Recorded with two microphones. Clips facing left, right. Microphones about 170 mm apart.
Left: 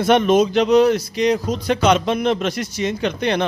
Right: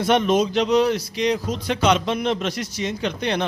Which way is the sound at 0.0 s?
55° left (ahead or behind).